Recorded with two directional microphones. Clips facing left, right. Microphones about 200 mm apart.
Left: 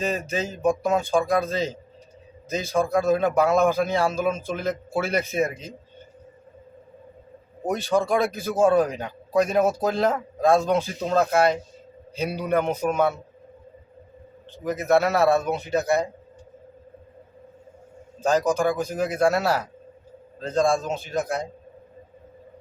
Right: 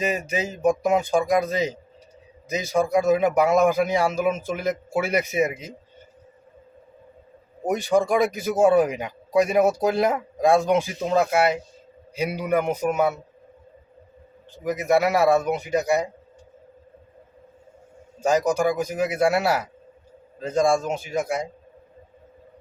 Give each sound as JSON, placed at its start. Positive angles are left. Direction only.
{"t": 0.0, "sound": "speech", "side_deg": -10}
{"t": 7.7, "sound": "speech", "side_deg": -15}
{"t": 14.6, "sound": "speech", "side_deg": -10}
{"t": 18.2, "sound": "speech", "side_deg": -10}